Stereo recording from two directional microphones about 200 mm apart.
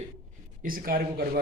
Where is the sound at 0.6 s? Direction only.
45° right (ahead or behind).